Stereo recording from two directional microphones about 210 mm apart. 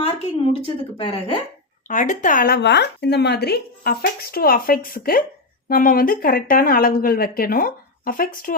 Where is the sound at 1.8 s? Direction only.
35° left (ahead or behind).